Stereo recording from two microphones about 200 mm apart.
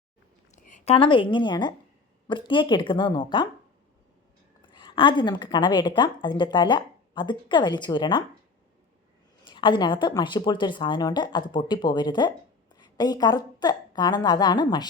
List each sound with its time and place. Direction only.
0.5 s a sound: 40° left (ahead or behind)
0.9 s a woman's voice: 25° left (ahead or behind)
4.7 s a woman's voice: 25° left (ahead or behind)
9.5 s a woman's voice: 25° left (ahead or behind)